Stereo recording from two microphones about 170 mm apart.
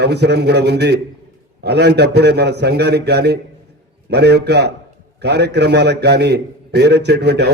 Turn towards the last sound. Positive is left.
turn(degrees=-75)  # may be behind; listen again after turning